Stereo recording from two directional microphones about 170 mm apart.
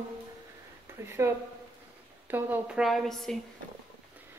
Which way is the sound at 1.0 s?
15° right (ahead or behind).